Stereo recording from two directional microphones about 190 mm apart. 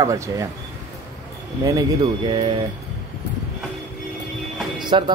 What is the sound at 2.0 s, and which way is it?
Speech, 25° right (ahead or behind).